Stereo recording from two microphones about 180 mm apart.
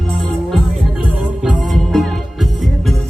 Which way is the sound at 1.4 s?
5° right (ahead or behind).